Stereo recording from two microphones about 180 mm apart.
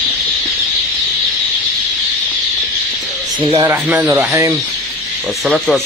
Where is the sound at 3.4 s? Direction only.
25° right (ahead or behind).